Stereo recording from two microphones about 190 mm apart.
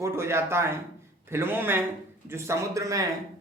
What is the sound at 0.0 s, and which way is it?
Speech, 15° right (ahead or behind).